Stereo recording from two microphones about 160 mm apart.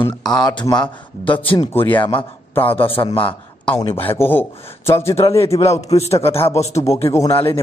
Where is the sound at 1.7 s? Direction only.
10° left (ahead or behind).